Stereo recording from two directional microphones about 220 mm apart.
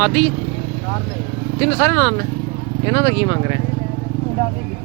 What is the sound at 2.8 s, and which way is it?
Speech, 20° left (ahead or behind).